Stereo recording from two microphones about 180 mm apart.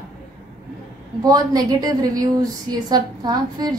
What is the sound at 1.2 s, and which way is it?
A woman's voice, 20° right (ahead or behind).